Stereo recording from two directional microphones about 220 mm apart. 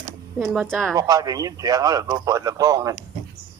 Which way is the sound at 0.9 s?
15° right (ahead or behind).